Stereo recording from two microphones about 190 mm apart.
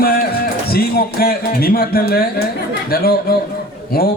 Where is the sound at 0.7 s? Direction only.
50° left (ahead or behind).